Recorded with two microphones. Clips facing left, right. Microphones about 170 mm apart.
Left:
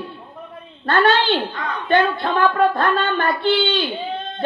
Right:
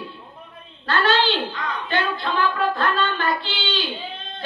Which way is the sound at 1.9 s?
55° left (ahead or behind).